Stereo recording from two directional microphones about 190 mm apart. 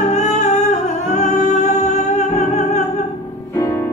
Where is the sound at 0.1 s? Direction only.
40° left (ahead or behind).